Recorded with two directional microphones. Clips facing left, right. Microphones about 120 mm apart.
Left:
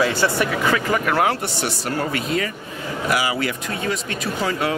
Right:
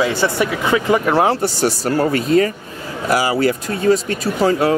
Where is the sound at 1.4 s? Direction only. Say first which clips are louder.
Right 7 dB; 35° right (ahead or behind).